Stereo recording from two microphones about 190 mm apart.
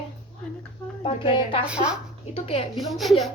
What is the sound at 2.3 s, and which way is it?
Speech, 30° left (ahead or behind).